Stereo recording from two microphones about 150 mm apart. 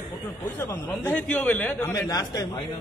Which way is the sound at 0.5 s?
15° left (ahead or behind).